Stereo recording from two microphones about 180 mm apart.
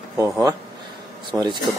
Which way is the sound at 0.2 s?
20° right (ahead or behind).